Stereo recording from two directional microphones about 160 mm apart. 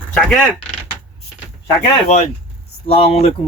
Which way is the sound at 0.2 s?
5° left (ahead or behind).